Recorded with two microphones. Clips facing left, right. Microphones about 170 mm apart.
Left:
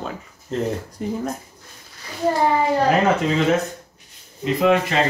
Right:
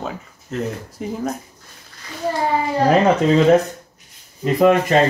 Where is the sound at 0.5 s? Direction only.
30° left (ahead or behind).